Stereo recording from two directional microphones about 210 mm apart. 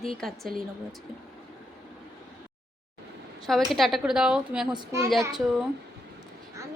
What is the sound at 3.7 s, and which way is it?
A woman's voice, centre (ahead or behind).